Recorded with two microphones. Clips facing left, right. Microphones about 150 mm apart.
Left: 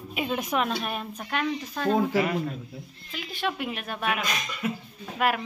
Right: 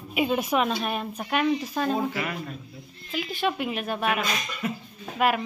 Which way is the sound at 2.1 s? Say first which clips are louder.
Left 7 dB; 30° left (ahead or behind).